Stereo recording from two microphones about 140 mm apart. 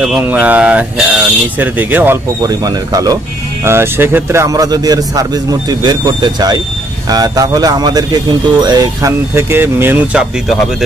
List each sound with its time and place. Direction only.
0.0 s speech: 5° right (ahead or behind)
2.4 s a man's voice: 25° right (ahead or behind)